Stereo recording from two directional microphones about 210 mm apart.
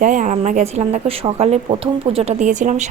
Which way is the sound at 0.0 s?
35° right (ahead or behind).